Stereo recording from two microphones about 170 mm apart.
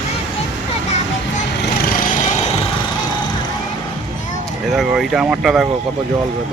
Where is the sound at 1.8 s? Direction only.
55° left (ahead or behind).